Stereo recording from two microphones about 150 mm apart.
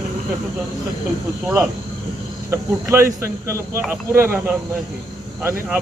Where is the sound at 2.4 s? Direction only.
20° right (ahead or behind).